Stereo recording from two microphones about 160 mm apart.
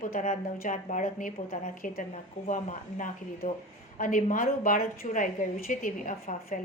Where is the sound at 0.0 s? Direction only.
55° left (ahead or behind).